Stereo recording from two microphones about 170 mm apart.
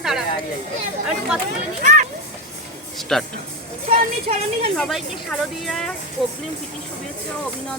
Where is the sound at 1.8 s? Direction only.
50° right (ahead or behind).